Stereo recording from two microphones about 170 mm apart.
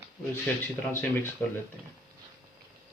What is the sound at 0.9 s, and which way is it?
Speech, 10° left (ahead or behind).